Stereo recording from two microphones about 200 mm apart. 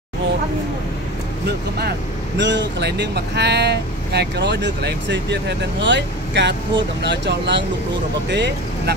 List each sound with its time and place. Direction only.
1.4 s speech: 55° right (ahead or behind)